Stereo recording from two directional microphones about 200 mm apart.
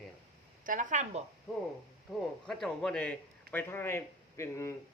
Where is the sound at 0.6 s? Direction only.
40° right (ahead or behind).